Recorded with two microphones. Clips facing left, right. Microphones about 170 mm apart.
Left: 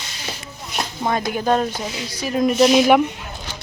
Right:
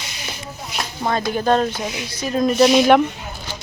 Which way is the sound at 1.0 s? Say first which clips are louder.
Right 1 dB; 15° left (ahead or behind).